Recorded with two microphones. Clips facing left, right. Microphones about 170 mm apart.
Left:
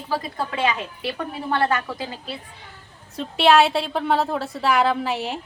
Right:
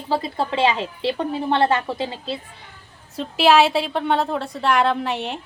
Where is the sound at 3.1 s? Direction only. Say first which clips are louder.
Right 1 dB; centre (ahead or behind).